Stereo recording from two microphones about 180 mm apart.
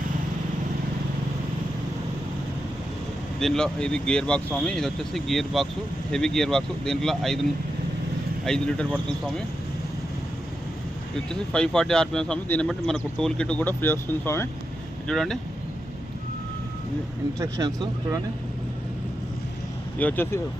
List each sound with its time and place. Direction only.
3.4 s a man's voice: 5° left (ahead or behind)
8.4 s a man's voice: 5° left (ahead or behind)
11.3 s a man's voice: 5° left (ahead or behind)
15.0 s a man's voice: centre (ahead or behind)
17.6 s speech: 15° right (ahead or behind)
20.0 s speech: 10° left (ahead or behind)